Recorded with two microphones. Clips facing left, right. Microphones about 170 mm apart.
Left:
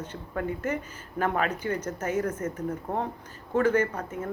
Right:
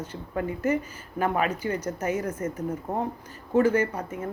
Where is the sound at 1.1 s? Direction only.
10° right (ahead or behind).